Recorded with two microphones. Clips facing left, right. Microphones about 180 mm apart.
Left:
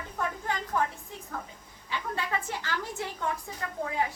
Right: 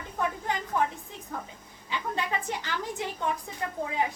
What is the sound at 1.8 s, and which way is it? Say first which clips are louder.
A woman's voice: right 2 dB; 20° right (ahead or behind).